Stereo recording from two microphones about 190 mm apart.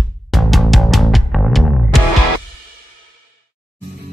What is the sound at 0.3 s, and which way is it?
Music, centre (ahead or behind).